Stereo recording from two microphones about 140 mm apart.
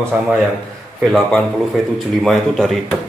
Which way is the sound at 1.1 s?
Centre (ahead or behind).